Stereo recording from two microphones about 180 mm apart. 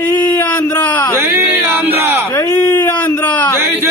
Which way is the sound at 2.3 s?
10° left (ahead or behind).